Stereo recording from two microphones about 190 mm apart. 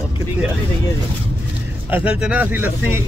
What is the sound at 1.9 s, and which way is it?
Speech, 10° right (ahead or behind).